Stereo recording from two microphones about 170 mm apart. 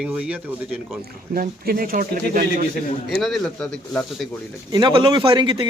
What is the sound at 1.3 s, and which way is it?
Speech, 55° right (ahead or behind).